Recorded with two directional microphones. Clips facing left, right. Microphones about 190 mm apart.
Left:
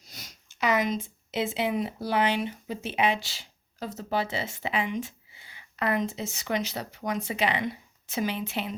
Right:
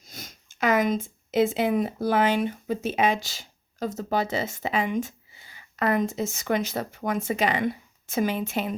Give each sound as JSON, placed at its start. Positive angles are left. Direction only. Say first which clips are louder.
{"t": 0.0, "sound": "speech", "louder": "right 5 dB", "side_deg": -45}